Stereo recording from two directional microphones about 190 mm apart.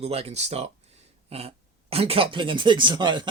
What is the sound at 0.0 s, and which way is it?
Speech, 30° right (ahead or behind).